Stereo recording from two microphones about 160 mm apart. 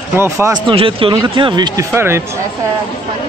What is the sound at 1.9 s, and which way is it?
Speech, 15° right (ahead or behind).